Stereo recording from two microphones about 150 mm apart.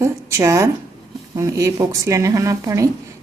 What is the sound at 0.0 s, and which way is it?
Speech, 20° right (ahead or behind).